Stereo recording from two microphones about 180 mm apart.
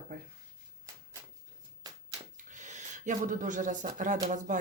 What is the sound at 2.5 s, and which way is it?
Speech, 40° right (ahead or behind).